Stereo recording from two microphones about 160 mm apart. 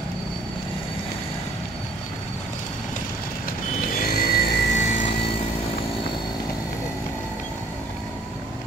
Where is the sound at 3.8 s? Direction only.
70° left (ahead or behind).